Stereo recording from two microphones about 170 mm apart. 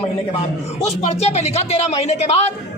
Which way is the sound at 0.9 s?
40° left (ahead or behind).